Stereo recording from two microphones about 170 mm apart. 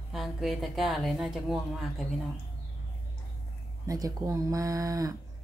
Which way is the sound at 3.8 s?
20° right (ahead or behind).